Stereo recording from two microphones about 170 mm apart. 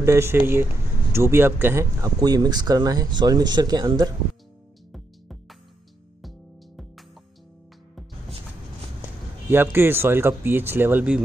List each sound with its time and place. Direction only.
0.0 s speech: 15° right (ahead or behind)
4.9 s music: centre (ahead or behind)
9.5 s speech: 15° right (ahead or behind)